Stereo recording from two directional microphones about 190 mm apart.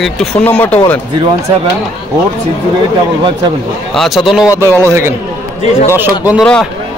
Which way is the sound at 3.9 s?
Centre (ahead or behind).